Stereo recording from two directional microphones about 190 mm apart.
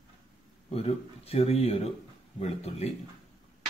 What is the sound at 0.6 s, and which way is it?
Speech, 30° left (ahead or behind).